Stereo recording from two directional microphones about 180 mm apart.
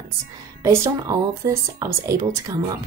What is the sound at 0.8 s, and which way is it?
Speech, 15° right (ahead or behind).